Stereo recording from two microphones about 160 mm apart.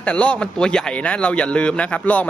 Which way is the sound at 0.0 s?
10° left (ahead or behind).